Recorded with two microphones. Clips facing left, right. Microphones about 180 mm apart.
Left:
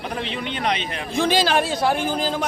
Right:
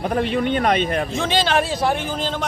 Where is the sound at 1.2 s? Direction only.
5° left (ahead or behind).